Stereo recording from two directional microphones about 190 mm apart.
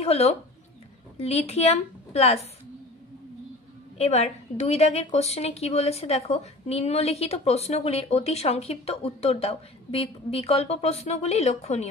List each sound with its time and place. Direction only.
0.0 s a woman's voice: 35° left (ahead or behind)
4.0 s a woman's voice: 35° left (ahead or behind)